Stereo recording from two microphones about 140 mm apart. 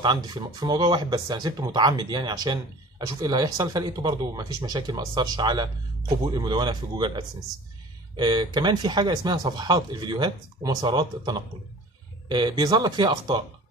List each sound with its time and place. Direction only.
0.0 s speech: 35° right (ahead or behind)